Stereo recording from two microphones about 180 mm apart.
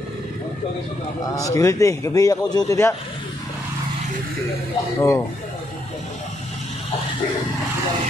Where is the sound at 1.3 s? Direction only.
20° left (ahead or behind).